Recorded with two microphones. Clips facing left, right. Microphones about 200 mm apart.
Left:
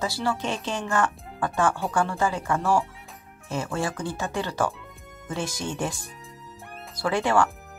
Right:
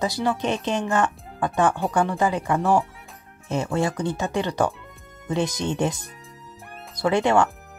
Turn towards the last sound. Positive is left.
turn(degrees=-20)  # may be behind; listen again after turning